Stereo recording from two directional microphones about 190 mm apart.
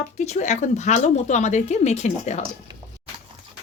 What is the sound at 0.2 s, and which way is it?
Speech, 40° left (ahead or behind).